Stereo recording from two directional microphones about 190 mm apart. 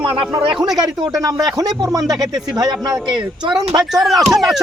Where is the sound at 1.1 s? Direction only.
15° right (ahead or behind).